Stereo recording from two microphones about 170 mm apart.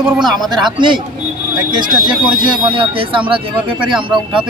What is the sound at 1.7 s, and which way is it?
Speech, 25° right (ahead or behind).